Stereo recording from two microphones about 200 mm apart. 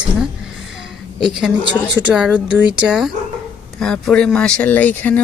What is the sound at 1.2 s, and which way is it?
A woman's voice, centre (ahead or behind).